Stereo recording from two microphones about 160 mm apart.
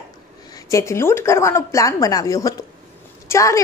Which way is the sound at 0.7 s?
20° left (ahead or behind).